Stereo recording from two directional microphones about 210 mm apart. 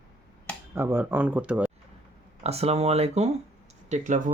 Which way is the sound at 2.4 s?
30° right (ahead or behind).